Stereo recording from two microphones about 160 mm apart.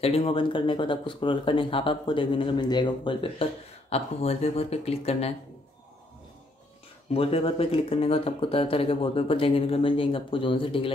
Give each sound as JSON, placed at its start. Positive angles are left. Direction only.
{"t": 0.0, "sound": "speech", "side_deg": 35}
{"t": 7.2, "sound": "speech", "side_deg": 40}